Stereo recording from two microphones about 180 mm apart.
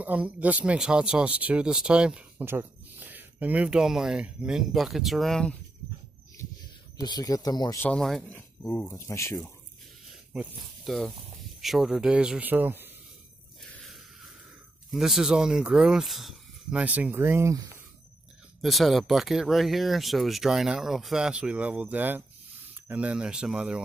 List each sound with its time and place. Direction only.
0.0 s speech: 10° right (ahead or behind)
7.0 s speech: 20° left (ahead or behind)
7.8 s speech: 5° left (ahead or behind)
10.3 s speech: 5° right (ahead or behind)
13.6 s a sound: centre (ahead or behind)
14.9 s speech: centre (ahead or behind)
18.6 s speech: centre (ahead or behind)